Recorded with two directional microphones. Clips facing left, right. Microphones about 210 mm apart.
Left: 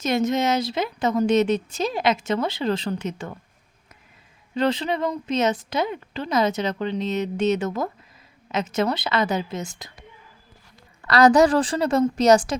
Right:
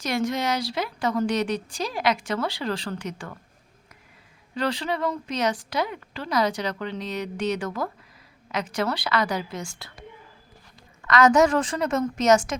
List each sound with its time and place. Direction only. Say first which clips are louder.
0.0 s a woman's voice: left 4 dB; 20° left (ahead or behind)
4.5 s a woman's voice: left 4 dB; 20° left (ahead or behind)
11.0 s a woman's voice: left 3 dB; 35° left (ahead or behind)